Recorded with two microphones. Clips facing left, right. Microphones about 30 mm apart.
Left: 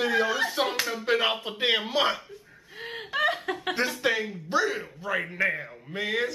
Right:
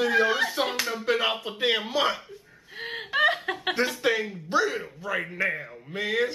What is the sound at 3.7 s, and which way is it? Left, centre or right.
Speech, centre.